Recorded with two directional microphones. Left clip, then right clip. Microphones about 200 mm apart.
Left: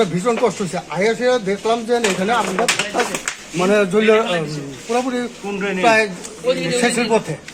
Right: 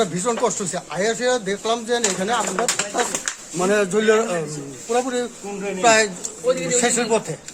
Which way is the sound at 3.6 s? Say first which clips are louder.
Left 4 dB; 15° right (ahead or behind).